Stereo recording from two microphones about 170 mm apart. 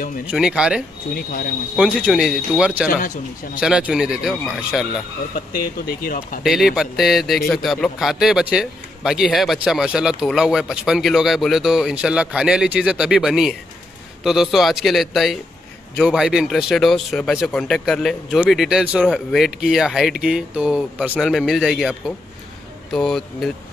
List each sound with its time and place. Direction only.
0.3 s a man's voice: 5° right (ahead or behind)
1.1 s speech: 60° left (ahead or behind)
1.8 s a man's voice: 5° right (ahead or behind)
6.4 s a man's voice: centre (ahead or behind)